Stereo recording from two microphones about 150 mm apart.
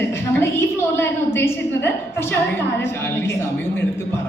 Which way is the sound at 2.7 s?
15° left (ahead or behind).